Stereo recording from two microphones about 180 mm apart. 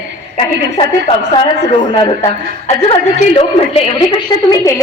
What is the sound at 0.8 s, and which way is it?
Speech, 30° left (ahead or behind).